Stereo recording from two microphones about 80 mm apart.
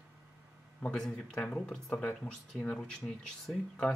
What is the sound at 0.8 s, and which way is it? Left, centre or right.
Speech, centre.